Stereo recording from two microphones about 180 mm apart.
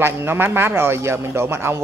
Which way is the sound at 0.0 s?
15° right (ahead or behind).